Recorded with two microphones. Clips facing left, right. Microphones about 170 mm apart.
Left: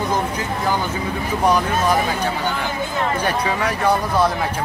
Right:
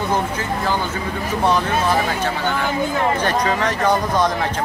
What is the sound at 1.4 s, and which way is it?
Speech, 15° left (ahead or behind).